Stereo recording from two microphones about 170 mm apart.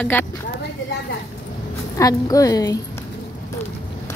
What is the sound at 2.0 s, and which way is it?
Speech, 20° left (ahead or behind).